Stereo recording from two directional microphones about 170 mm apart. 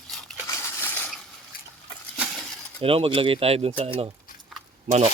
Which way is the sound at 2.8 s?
35° right (ahead or behind).